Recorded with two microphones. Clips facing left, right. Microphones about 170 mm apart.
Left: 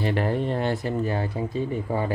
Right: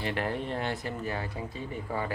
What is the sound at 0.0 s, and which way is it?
Speech, 40° left (ahead or behind).